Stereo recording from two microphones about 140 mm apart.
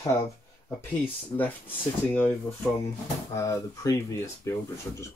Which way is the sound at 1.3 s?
10° left (ahead or behind).